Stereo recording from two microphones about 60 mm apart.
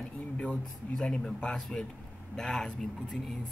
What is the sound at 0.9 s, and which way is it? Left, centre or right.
Speech, centre.